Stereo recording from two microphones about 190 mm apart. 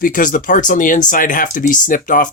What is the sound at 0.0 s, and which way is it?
Speech, 45° left (ahead or behind).